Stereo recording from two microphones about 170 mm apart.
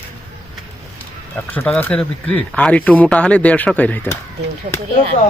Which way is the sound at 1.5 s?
10° left (ahead or behind).